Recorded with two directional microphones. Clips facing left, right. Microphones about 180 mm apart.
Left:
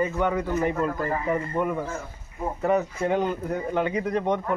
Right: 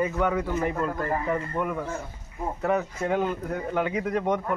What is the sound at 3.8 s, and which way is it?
Speech, centre (ahead or behind).